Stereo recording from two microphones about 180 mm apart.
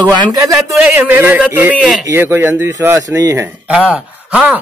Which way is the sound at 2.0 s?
10° right (ahead or behind).